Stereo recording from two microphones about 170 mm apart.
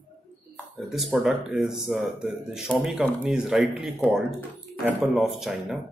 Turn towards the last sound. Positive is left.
turn(degrees=0)  # may be behind; listen again after turning